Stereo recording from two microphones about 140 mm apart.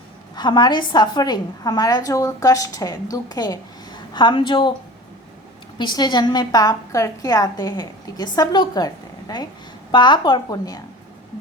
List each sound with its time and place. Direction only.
0.3 s a woman's voice: 30° left (ahead or behind)
5.7 s a woman's voice: 30° left (ahead or behind)